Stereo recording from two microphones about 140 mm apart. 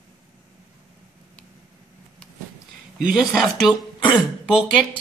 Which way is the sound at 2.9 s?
5° right (ahead or behind).